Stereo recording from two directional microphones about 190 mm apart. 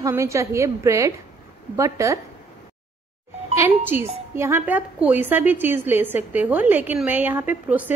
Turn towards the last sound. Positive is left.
turn(degrees=-10)  # may be behind; listen again after turning